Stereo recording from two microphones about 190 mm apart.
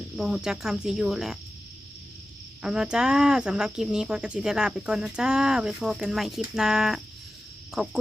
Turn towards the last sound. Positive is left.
turn(degrees=-5)  # may be behind; listen again after turning